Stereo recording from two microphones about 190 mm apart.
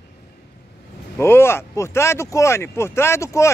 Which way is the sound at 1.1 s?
15° left (ahead or behind).